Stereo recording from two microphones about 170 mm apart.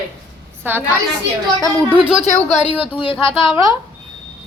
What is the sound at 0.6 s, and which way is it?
Speech, 10° right (ahead or behind).